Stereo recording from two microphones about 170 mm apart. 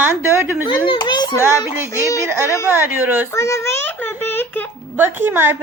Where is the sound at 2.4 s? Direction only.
15° left (ahead or behind).